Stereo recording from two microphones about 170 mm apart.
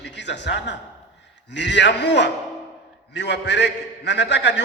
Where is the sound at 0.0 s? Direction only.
90° left.